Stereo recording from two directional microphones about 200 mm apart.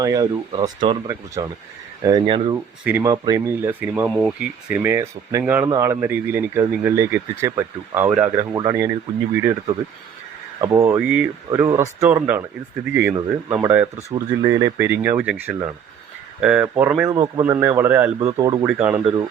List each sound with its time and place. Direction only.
0.0 s speech: 15° right (ahead or behind)
2.8 s speech: 15° right (ahead or behind)
8.4 s speech: 20° right (ahead or behind)